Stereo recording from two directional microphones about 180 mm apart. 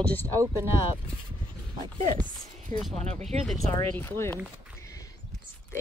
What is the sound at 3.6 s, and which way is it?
Speech, 15° left (ahead or behind).